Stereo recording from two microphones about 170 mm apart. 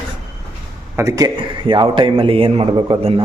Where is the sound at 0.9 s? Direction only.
15° right (ahead or behind).